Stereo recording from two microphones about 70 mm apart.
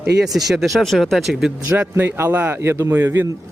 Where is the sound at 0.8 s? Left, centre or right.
Centre.